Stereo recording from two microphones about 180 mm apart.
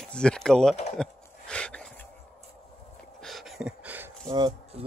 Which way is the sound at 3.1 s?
Centre (ahead or behind).